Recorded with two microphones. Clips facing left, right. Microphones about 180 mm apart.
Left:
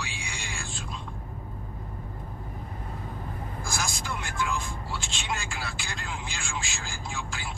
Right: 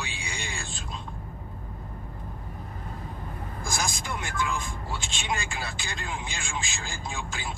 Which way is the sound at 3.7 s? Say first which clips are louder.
Right 2 dB; 15° right (ahead or behind).